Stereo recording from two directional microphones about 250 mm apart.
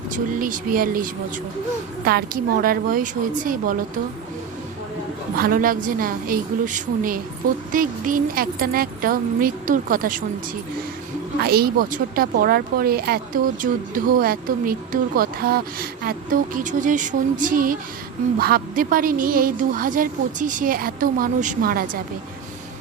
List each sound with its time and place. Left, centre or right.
0.1 s a woman's voice: right
5.4 s a woman's voice: right
11.3 s a woman's voice: right